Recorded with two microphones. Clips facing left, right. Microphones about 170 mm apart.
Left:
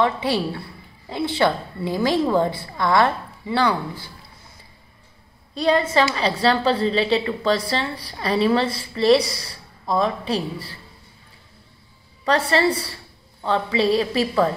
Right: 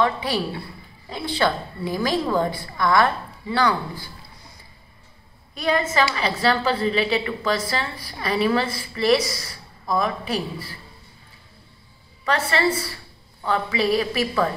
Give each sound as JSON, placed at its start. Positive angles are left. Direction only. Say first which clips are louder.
{"t": 0.0, "sound": "a woman's voice", "louder": "left 2 dB", "side_deg": 25}
{"t": 5.5, "sound": "a woman's voice", "louder": "left 3 dB", "side_deg": 30}
{"t": 12.3, "sound": "a woman's voice", "louder": "left 3 dB", "side_deg": 35}